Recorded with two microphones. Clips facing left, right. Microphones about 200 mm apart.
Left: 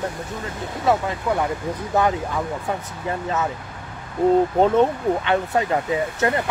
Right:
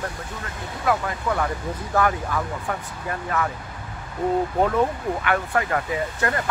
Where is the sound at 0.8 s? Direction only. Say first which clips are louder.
Left 3 dB; 20° left (ahead or behind).